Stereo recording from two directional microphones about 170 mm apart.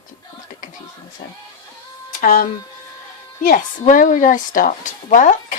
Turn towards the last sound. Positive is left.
turn(degrees=50)  # may be behind; listen again after turning